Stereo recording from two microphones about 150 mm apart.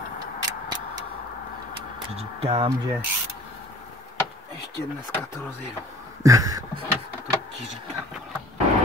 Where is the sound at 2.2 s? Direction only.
45° right (ahead or behind).